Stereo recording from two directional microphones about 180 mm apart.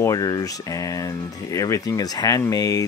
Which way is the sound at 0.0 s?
20° left (ahead or behind).